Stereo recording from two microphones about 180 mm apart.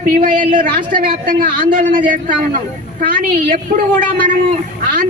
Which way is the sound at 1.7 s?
50° right (ahead or behind).